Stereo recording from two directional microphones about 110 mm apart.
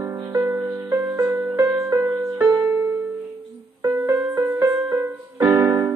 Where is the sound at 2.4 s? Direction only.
35° right (ahead or behind).